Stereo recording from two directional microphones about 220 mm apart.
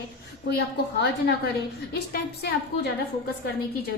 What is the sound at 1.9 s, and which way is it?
Speech, 45° left (ahead or behind).